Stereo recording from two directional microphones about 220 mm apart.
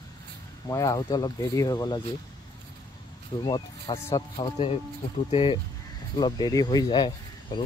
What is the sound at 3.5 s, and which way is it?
Speech, 20° left (ahead or behind).